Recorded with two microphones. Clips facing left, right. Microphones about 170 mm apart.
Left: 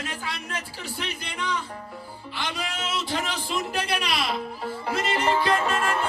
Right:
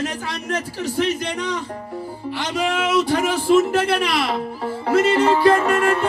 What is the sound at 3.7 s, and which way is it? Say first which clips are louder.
Music: right 8 dB; 70° right (ahead or behind).